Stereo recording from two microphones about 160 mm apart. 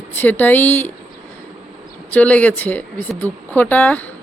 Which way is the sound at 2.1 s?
10° left (ahead or behind).